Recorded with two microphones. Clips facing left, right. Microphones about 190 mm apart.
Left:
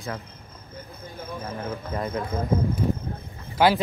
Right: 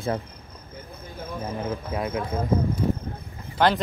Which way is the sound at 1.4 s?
5° right (ahead or behind).